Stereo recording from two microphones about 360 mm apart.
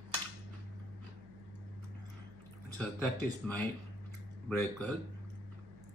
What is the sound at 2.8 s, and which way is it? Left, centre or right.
Speech, centre.